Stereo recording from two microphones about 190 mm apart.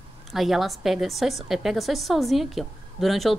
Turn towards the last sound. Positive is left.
turn(degrees=0)  # may be behind; listen again after turning